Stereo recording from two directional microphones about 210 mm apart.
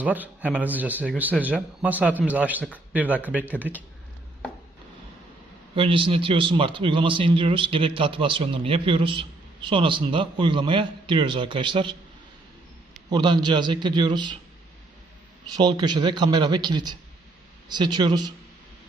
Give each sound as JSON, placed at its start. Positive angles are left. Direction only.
{"t": 0.0, "sound": "a man's voice", "side_deg": -5}
{"t": 5.8, "sound": "a man's voice", "side_deg": -25}
{"t": 13.1, "sound": "a man's voice", "side_deg": -20}
{"t": 15.5, "sound": "a man's voice", "side_deg": -20}